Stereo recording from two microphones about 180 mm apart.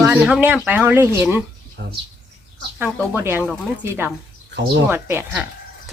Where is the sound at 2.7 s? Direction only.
10° right (ahead or behind).